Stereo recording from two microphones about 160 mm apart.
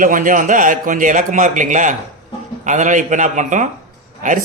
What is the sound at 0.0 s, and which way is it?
Speech, 55° right (ahead or behind).